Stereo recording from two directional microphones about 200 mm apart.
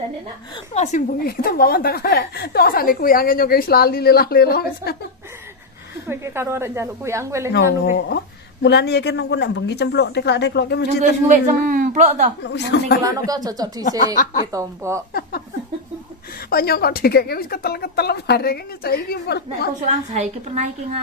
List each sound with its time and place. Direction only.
0.7 s a woman's voice: 45° left (ahead or behind)
6.0 s speech: 10° right (ahead or behind)
7.8 s a woman's voice: 50° left (ahead or behind)
11.2 s a woman's voice: 45° right (ahead or behind)
12.4 s a woman's voice: 60° left (ahead or behind)
13.2 s speech: 20° right (ahead or behind)
13.8 s speech: 40° left (ahead or behind)
14.5 s speech: 15° right (ahead or behind)
16.4 s a woman's voice: 50° left (ahead or behind)
19.9 s a woman's voice: 35° right (ahead or behind)